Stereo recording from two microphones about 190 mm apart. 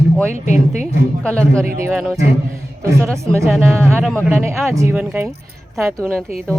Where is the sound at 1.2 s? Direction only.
5° left (ahead or behind).